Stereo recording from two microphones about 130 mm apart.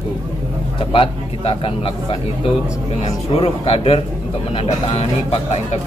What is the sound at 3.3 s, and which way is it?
Speech, 50° left (ahead or behind).